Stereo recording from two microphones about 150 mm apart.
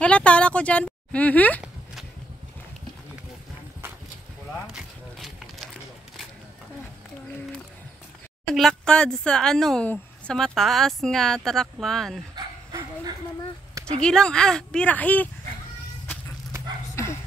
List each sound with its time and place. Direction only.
0.0 s a woman's voice: 5° left (ahead or behind)
4.7 s a sound: centre (ahead or behind)
8.5 s a woman's voice: 5° left (ahead or behind)
13.9 s a woman's voice: 5° left (ahead or behind)
16.9 s dog: 20° left (ahead or behind)